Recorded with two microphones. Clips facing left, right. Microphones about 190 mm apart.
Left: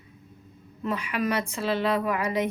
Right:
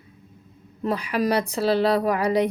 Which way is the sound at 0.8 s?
35° right (ahead or behind).